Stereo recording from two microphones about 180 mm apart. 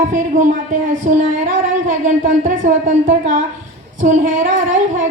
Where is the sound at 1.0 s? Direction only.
45° right (ahead or behind).